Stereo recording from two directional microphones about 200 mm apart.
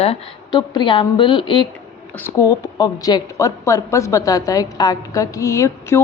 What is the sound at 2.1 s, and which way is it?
A woman's voice, 15° left (ahead or behind).